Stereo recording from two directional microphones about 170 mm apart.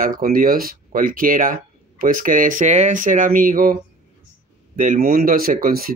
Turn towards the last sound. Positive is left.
turn(degrees=-60)  # may be behind; listen again after turning